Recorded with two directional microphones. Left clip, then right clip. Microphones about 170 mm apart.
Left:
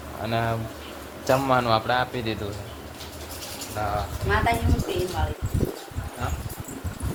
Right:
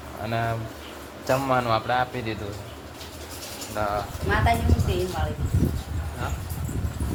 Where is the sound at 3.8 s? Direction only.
70° right (ahead or behind).